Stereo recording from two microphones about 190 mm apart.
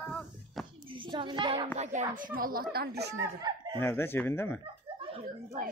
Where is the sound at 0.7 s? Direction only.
25° right (ahead or behind).